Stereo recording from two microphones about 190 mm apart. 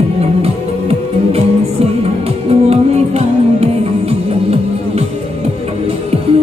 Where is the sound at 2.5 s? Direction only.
30° right (ahead or behind).